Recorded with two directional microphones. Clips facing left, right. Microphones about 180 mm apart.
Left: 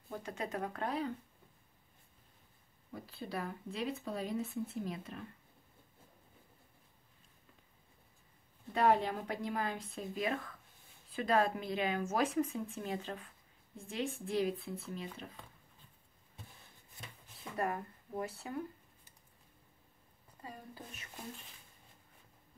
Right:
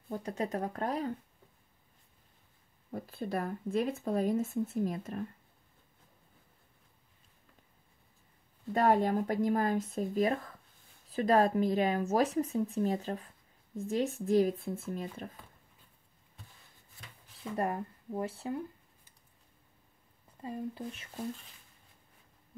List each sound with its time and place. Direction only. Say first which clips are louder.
0.2 s speech: right 5 dB; 35° right (ahead or behind)
2.9 s speech: right 7 dB; 50° right (ahead or behind)
8.7 s speech: right 4 dB; 45° right (ahead or behind)
17.6 s speech: right 3 dB; 25° right (ahead or behind)
20.4 s speech: right 11 dB; 25° right (ahead or behind)